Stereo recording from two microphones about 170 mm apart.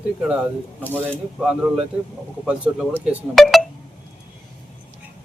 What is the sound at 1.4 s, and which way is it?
Speech, 5° right (ahead or behind).